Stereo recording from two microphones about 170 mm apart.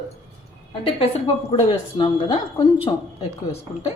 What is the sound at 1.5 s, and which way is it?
Speech, 35° left (ahead or behind).